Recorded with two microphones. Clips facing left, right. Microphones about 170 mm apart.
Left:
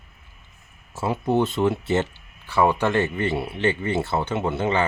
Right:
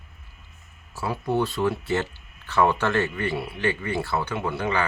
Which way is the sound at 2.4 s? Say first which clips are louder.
Left 2 dB; 10° left (ahead or behind).